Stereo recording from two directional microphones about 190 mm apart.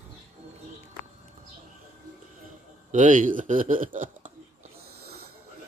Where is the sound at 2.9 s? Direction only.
45° right (ahead or behind).